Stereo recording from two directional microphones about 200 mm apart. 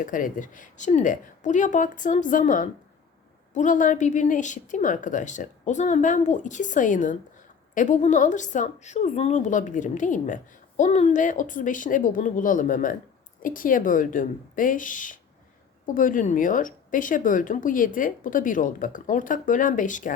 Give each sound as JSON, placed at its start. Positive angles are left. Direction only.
{"t": 0.0, "sound": "a woman's voice", "side_deg": 40}